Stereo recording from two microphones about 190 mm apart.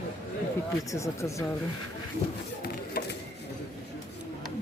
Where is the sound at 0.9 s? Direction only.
15° left (ahead or behind).